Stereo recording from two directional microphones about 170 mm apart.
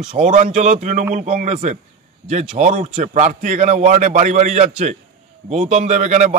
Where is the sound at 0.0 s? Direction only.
45° right (ahead or behind).